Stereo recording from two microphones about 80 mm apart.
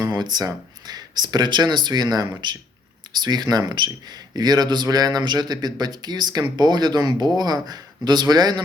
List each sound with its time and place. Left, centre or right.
0.0 s speech: right